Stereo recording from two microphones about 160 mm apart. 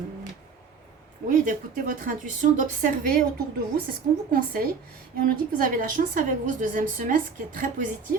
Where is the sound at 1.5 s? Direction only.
55° right (ahead or behind).